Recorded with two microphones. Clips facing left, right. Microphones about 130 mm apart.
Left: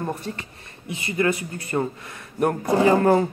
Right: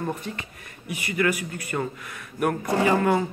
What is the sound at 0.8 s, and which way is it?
Speech, 25° left (ahead or behind).